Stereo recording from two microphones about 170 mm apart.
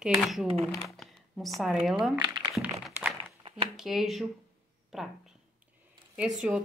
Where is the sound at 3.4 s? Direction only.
35° right (ahead or behind).